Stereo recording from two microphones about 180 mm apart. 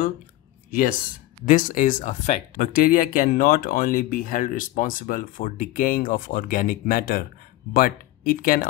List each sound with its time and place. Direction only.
0.7 s speech: 50° left (ahead or behind)